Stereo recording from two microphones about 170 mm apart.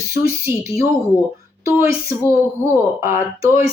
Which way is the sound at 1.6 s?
15° right (ahead or behind).